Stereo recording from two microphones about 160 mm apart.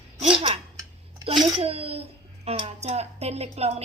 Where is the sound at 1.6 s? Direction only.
40° right (ahead or behind).